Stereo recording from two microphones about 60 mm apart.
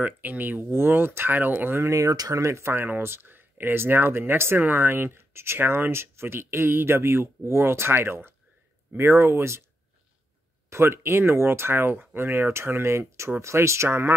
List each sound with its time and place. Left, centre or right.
0.0 s speech: right
1.9 s speech: right
10.7 s speech: right